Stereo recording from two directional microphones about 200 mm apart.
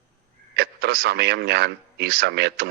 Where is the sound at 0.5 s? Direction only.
55° right (ahead or behind).